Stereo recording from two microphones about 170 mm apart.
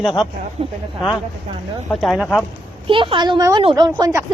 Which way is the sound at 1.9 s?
Centre (ahead or behind).